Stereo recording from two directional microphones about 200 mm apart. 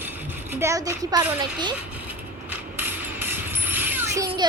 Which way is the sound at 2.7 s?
10° right (ahead or behind).